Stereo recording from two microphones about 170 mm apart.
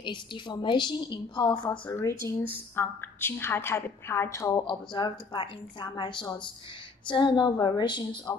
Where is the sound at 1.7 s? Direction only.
15° left (ahead or behind).